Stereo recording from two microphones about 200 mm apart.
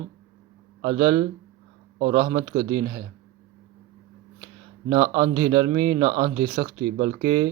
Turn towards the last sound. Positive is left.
turn(degrees=-25)  # may be behind; listen again after turning